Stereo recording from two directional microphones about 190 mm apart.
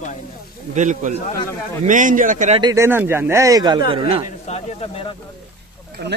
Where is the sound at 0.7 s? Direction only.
40° right (ahead or behind).